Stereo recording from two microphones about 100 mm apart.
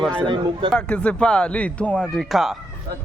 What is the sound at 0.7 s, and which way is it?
Speech, 10° left (ahead or behind).